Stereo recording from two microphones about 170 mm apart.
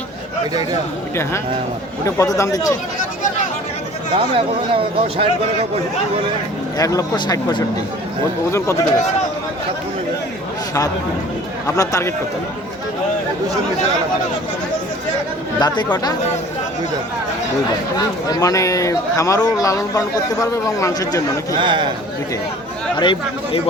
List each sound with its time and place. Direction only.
2.0 s a man's voice: 20° left (ahead or behind)
4.1 s speech: 30° right (ahead or behind)
6.7 s a man's voice: 20° left (ahead or behind)
11.6 s a man's voice: 20° left (ahead or behind)
15.5 s a man's voice: 25° left (ahead or behind)
18.3 s a man's voice: 20° left (ahead or behind)
21.5 s speech: 25° right (ahead or behind)
23.0 s a man's voice: 30° left (ahead or behind)